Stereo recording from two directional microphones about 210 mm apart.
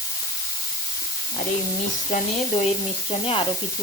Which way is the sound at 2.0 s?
35° left (ahead or behind).